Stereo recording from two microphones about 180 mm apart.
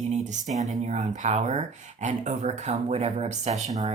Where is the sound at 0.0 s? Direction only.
40° right (ahead or behind).